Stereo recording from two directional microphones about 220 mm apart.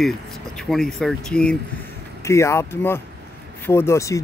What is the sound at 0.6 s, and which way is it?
Speech, centre (ahead or behind).